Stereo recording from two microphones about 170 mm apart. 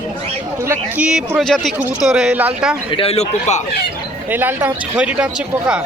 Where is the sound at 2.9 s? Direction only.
35° left (ahead or behind).